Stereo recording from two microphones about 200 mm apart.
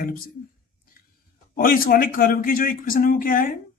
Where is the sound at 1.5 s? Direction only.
45° left (ahead or behind).